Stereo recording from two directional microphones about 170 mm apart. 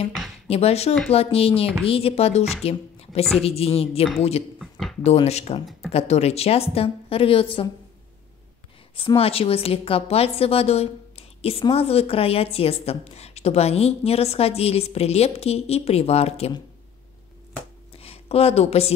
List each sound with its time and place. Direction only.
0.5 s a woman's voice: 35° left (ahead or behind)
4.6 s a sound: centre (ahead or behind)
5.0 s a woman's voice: 40° left (ahead or behind)
8.9 s a woman's voice: 35° left (ahead or behind)
17.9 s speech: 35° left (ahead or behind)